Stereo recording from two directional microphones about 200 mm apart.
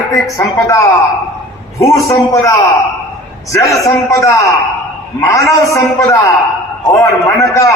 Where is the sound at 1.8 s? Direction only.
15° left (ahead or behind).